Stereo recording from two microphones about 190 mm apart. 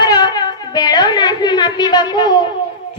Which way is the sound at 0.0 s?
20° left (ahead or behind).